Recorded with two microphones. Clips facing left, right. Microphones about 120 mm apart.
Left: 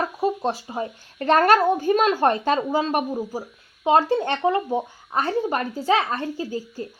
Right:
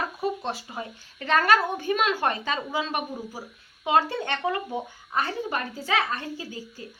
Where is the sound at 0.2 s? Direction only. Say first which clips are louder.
Left 6 dB; 35° left (ahead or behind).